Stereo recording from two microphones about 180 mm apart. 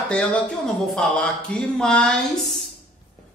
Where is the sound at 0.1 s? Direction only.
5° left (ahead or behind).